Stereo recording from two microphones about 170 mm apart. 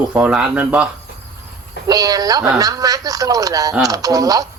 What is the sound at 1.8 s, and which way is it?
Speech, 20° right (ahead or behind).